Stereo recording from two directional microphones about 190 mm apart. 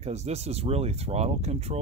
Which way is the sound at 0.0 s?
35° right (ahead or behind).